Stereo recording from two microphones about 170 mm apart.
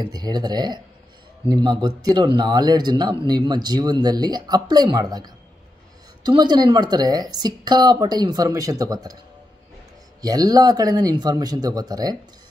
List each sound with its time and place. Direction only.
0.0 s speech: 25° right (ahead or behind)
10.2 s speech: 20° right (ahead or behind)